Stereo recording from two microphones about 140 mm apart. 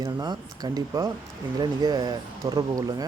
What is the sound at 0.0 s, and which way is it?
Speech, 25° right (ahead or behind).